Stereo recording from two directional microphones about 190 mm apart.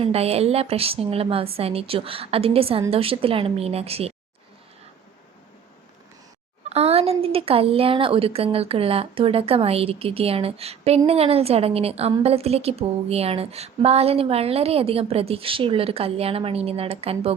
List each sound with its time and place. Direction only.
0.0 s a woman's voice: 30° right (ahead or behind)
6.7 s a woman's voice: 35° right (ahead or behind)